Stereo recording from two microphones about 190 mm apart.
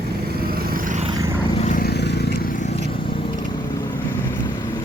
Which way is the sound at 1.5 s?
40° left (ahead or behind).